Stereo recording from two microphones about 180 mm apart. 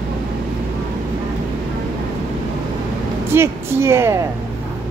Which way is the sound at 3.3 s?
15° right (ahead or behind).